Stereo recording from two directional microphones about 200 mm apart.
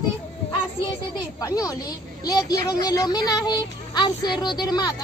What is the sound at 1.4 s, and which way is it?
A woman's voice, 15° left (ahead or behind).